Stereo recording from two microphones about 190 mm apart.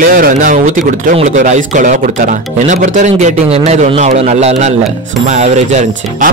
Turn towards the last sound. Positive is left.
turn(degrees=-35)  # may be behind; listen again after turning